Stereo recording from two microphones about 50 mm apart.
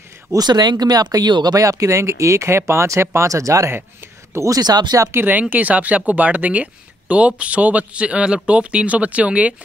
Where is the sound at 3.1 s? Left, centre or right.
Right.